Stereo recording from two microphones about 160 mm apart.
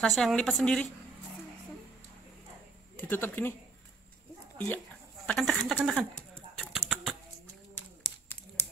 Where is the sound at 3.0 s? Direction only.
10° left (ahead or behind).